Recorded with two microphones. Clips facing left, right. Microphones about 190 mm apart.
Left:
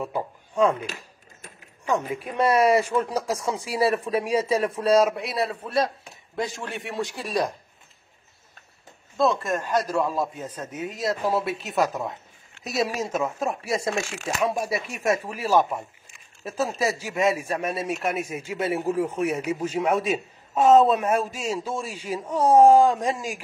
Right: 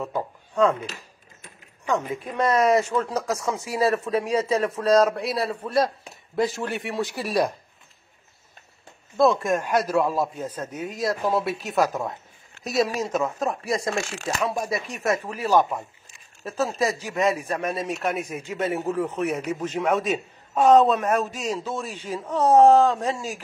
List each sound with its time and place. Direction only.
0.0 s speech: 10° left (ahead or behind)
1.9 s speech: 10° left (ahead or behind)
3.3 s speech: 30° left (ahead or behind)
3.8 s a man's voice: 10° left (ahead or behind); by 7.5 s 5° right (ahead or behind)
9.1 s a man's voice: 15° right (ahead or behind); by 23.4 s 10° left (ahead or behind)